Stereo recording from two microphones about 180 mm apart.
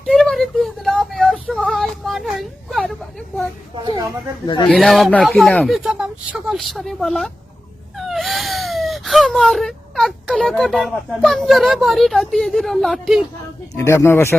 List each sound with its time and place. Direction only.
0.0 s a sound: centre (ahead or behind)
4.4 s speech: 25° left (ahead or behind)
4.7 s speech: centre (ahead or behind)
13.7 s speech: 15° left (ahead or behind)